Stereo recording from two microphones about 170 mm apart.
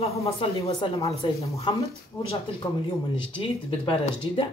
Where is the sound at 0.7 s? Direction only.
20° left (ahead or behind).